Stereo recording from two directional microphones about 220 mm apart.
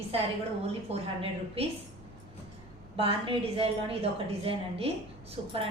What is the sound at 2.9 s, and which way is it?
A woman's voice, 25° right (ahead or behind).